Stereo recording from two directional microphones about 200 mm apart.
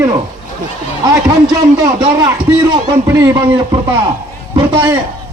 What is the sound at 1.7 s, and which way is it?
A man's voice, 20° right (ahead or behind).